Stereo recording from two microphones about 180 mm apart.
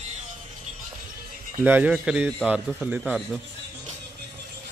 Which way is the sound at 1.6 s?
10° right (ahead or behind).